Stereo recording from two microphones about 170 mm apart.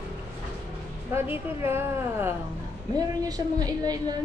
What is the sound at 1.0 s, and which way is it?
A woman's voice, 10° right (ahead or behind).